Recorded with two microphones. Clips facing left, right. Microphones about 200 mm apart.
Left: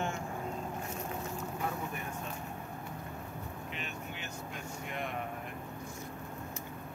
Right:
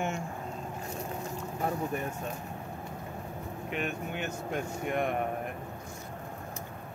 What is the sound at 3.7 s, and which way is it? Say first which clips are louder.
Speech: right 13 dB; 55° right (ahead or behind).